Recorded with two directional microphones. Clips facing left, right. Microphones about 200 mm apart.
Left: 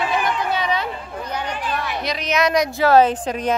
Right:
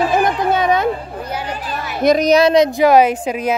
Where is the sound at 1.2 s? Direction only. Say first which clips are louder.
Right 2 dB; 10° right (ahead or behind).